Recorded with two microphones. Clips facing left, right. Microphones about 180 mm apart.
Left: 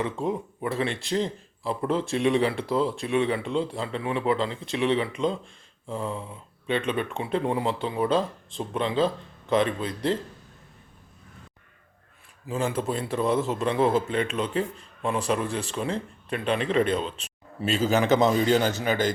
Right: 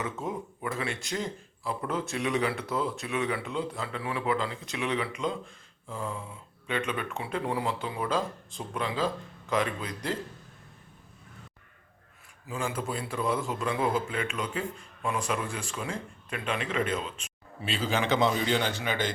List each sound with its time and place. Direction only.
0.0 s a man's voice: 30° left (ahead or behind)
12.5 s a man's voice: 35° left (ahead or behind)